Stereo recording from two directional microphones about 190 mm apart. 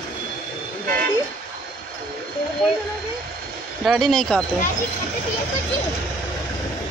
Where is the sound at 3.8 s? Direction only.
Centre (ahead or behind).